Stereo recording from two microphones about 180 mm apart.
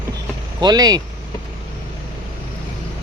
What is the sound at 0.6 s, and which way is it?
Speech, 20° right (ahead or behind).